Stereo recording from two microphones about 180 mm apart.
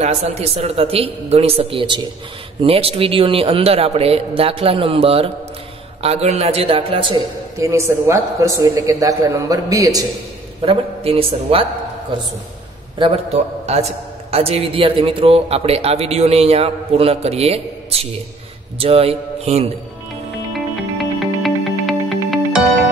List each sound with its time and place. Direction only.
0.0 s a man's voice: 35° right (ahead or behind)
7.5 s a man's voice: 15° right (ahead or behind)
10.6 s a man's voice: 30° right (ahead or behind)
21.0 s music: centre (ahead or behind)